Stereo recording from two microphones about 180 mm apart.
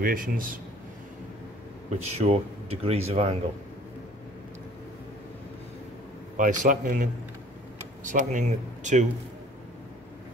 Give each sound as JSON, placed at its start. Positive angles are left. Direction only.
{"t": 0.0, "sound": "speech", "side_deg": -55}
{"t": 1.9, "sound": "speech", "side_deg": -35}
{"t": 6.3, "sound": "speech", "side_deg": -45}